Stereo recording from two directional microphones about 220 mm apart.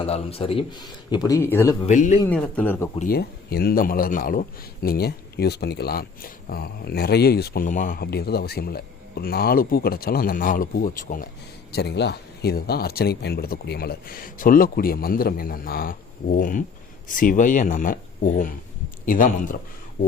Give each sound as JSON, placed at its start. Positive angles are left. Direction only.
{"t": 0.0, "sound": "speech", "side_deg": 25}
{"t": 1.9, "sound": "speech", "side_deg": 35}
{"t": 2.2, "sound": "speech", "side_deg": 5}
{"t": 3.1, "sound": "speech", "side_deg": 45}
{"t": 11.7, "sound": "speech", "side_deg": 50}